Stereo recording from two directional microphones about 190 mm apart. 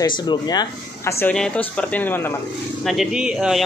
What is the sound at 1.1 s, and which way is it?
Speech, 10° left (ahead or behind).